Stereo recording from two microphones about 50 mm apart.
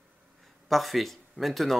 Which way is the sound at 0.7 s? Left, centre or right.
Centre.